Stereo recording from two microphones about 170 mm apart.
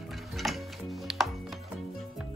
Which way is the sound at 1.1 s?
Centre (ahead or behind).